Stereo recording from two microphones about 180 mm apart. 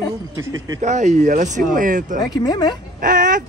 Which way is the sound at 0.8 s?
40° right (ahead or behind).